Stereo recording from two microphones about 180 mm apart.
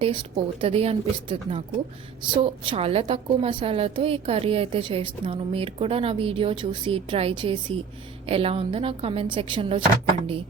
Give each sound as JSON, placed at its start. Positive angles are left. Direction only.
{"t": 0.0, "sound": "a woman's voice", "side_deg": -30}